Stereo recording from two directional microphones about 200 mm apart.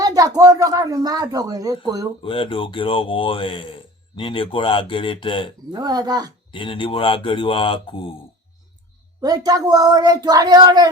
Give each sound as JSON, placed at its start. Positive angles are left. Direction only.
{"t": 0.0, "sound": "speech", "side_deg": -20}
{"t": 2.2, "sound": "speech", "side_deg": 25}
{"t": 5.7, "sound": "speech", "side_deg": -20}
{"t": 6.5, "sound": "speech", "side_deg": 25}
{"t": 9.2, "sound": "speech", "side_deg": -20}